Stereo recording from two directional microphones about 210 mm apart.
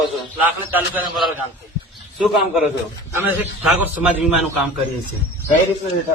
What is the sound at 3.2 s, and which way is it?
A man's voice, 5° right (ahead or behind).